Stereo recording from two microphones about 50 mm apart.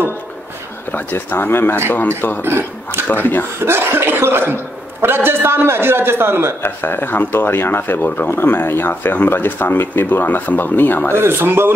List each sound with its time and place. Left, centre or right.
1.1 s speech: left
2.4 s a man's voice: right
3.1 s speech: left
3.6 s a man's voice: right
6.6 s speech: left
11.1 s a man's voice: right